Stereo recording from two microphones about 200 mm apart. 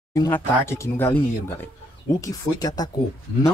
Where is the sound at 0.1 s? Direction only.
15° left (ahead or behind).